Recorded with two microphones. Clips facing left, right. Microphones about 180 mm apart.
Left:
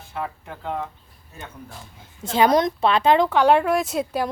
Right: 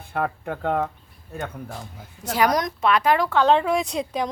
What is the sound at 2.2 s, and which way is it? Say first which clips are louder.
A woman's voice: left 4 dB; 25° left (ahead or behind).